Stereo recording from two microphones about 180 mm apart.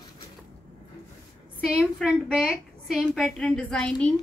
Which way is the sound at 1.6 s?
5° right (ahead or behind).